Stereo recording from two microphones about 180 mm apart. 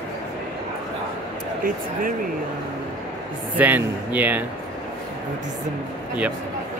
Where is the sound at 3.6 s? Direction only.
10° right (ahead or behind).